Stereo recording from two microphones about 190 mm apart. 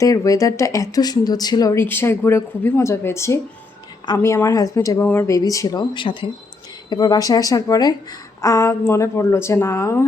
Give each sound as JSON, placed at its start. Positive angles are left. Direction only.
{"t": 0.0, "sound": "speech", "side_deg": 15}